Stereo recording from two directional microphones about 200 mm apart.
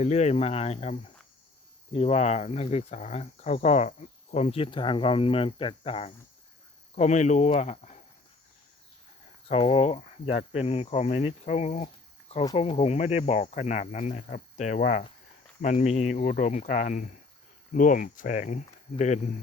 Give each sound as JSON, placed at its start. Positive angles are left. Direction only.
{"t": 0.0, "sound": "speech", "side_deg": 35}
{"t": 9.5, "sound": "speech", "side_deg": 30}